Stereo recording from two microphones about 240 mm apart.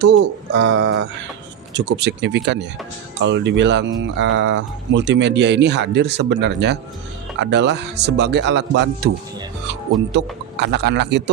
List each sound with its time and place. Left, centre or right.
0.0 s speech: right